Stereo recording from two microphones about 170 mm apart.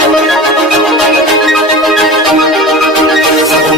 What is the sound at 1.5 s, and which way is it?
Music, centre (ahead or behind).